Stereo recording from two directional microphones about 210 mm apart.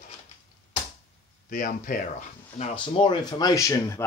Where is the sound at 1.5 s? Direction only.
40° left (ahead or behind).